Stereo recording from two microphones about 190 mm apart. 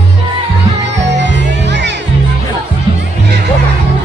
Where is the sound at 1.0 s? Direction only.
70° right (ahead or behind).